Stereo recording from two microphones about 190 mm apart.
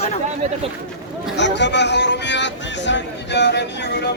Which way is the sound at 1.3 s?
65° left (ahead or behind).